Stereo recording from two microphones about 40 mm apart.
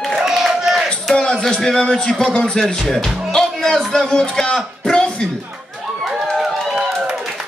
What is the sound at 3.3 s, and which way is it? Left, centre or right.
Music, centre.